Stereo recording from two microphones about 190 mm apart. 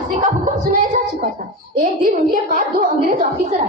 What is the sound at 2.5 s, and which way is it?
Speech, 45° right (ahead or behind).